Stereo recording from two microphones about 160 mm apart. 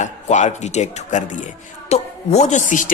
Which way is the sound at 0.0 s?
50° left (ahead or behind).